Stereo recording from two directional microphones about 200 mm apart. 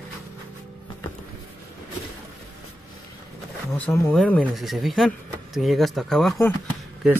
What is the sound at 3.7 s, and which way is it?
Speech, 15° left (ahead or behind).